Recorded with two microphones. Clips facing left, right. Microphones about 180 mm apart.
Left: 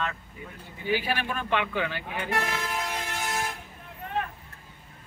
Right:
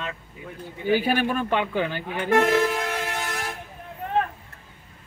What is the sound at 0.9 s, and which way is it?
Speech, 50° right (ahead or behind).